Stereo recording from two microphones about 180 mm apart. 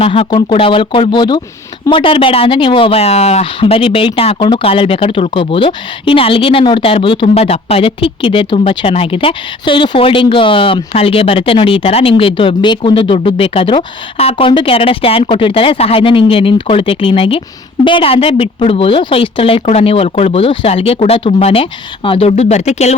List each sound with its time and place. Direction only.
0.0 s a woman's voice: 30° left (ahead or behind)